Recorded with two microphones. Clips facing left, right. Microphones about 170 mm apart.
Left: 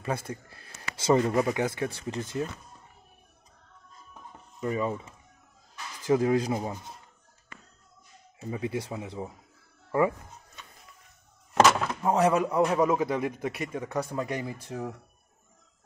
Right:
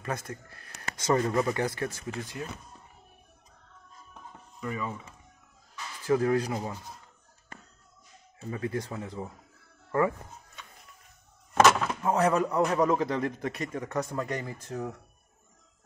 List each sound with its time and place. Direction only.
0.0 s a man's voice: 15° left (ahead or behind)
1.9 s speech: 30° left (ahead or behind)
4.6 s speech: 30° left (ahead or behind)
6.0 s a man's voice: 15° left (ahead or behind)
8.4 s a man's voice: 15° left (ahead or behind)
12.0 s a man's voice: 15° left (ahead or behind)